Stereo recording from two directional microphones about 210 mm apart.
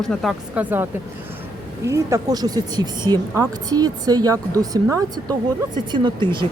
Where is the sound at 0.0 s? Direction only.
Centre (ahead or behind).